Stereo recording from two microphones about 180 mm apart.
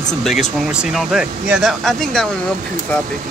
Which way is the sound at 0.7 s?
5° right (ahead or behind).